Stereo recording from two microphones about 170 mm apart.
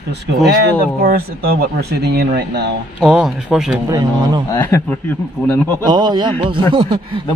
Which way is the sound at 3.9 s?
25° right (ahead or behind).